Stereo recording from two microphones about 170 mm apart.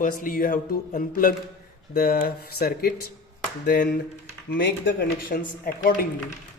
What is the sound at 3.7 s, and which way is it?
Speech, 80° left.